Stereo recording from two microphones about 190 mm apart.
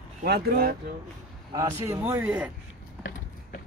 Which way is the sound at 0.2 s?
50° right (ahead or behind).